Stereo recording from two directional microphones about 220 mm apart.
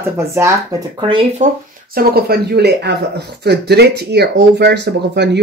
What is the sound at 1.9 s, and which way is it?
Speech, 45° right (ahead or behind).